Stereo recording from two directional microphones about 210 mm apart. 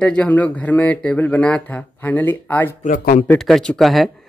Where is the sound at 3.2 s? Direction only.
Centre (ahead or behind).